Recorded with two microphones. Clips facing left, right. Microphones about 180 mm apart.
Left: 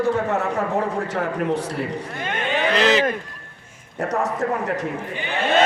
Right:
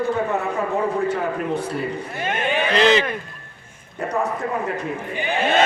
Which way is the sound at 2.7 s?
5° left (ahead or behind).